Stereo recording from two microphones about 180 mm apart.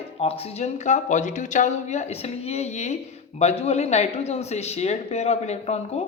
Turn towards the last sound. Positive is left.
turn(degrees=35)  # may be behind; listen again after turning